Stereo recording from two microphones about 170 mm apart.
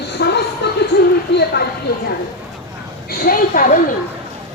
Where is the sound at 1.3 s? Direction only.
90° left.